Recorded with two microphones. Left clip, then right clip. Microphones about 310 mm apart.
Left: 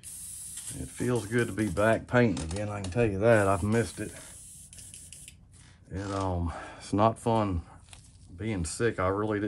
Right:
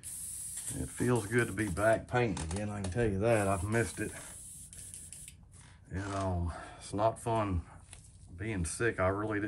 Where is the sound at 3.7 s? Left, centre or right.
Centre.